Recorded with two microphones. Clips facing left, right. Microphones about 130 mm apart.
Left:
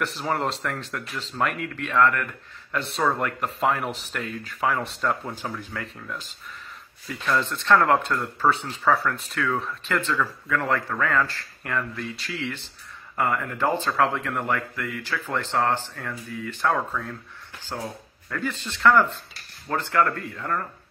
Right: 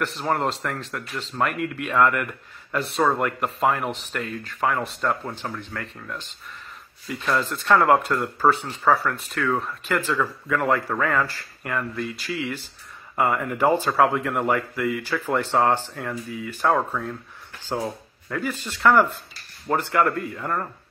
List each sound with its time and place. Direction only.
0.0 s speech: centre (ahead or behind)
1.9 s speech: 10° right (ahead or behind)
2.7 s speech: centre (ahead or behind)
13.1 s speech: 20° right (ahead or behind)
18.3 s speech: 5° right (ahead or behind)